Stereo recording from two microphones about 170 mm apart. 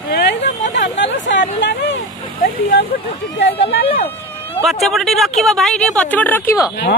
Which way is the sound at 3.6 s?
35° left (ahead or behind).